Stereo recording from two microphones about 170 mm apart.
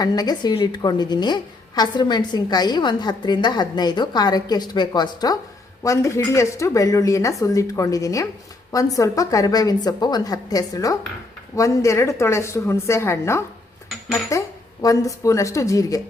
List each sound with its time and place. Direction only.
0.0 s a woman's voice: 25° left (ahead or behind)